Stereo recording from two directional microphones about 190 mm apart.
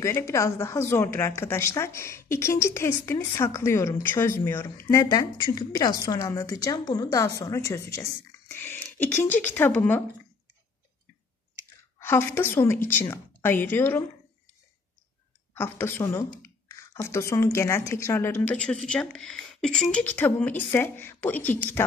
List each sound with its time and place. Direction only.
0.0 s speech: 15° left (ahead or behind)
12.0 s speech: 15° left (ahead or behind)
15.5 s speech: 10° left (ahead or behind)